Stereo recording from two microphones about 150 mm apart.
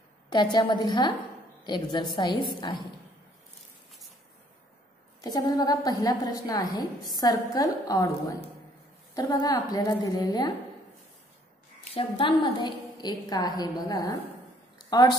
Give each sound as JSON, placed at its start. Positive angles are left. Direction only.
{"t": 0.3, "sound": "a woman's voice", "side_deg": 30}
{"t": 5.2, "sound": "a woman's voice", "side_deg": 25}
{"t": 11.9, "sound": "a woman's voice", "side_deg": 35}